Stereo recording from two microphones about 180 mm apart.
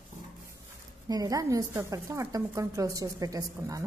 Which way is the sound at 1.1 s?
20° right (ahead or behind).